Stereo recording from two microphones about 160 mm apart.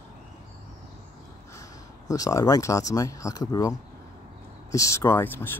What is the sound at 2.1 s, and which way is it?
Speech, 20° left (ahead or behind).